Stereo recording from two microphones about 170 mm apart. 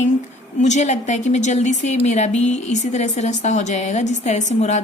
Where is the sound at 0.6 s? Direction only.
45° left (ahead or behind).